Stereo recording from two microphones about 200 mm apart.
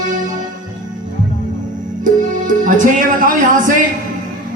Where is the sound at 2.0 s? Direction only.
40° right (ahead or behind).